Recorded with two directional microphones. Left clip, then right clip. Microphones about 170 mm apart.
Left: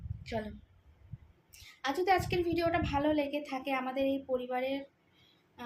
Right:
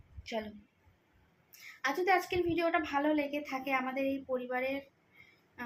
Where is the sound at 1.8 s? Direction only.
10° left (ahead or behind).